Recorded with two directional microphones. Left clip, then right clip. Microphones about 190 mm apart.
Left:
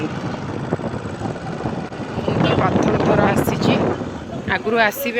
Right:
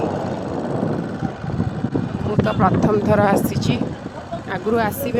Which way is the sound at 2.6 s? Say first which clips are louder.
Even; 30° right (ahead or behind).